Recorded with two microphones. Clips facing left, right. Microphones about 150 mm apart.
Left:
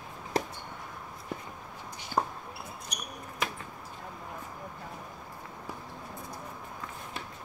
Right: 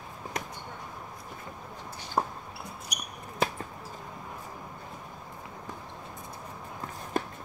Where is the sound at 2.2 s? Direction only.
10° right (ahead or behind).